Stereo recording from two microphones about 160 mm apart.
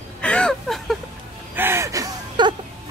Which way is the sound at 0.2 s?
5° left (ahead or behind).